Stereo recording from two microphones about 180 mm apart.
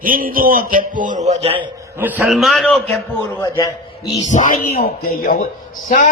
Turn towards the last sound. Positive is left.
turn(degrees=50)  # may be behind; listen again after turning